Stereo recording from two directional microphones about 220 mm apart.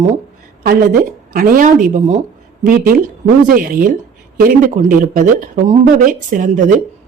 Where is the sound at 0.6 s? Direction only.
45° right (ahead or behind).